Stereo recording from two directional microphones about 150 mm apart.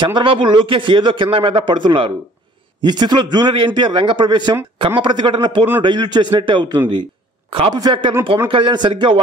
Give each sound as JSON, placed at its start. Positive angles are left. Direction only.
{"t": 0.0, "sound": "a man's voice", "side_deg": -35}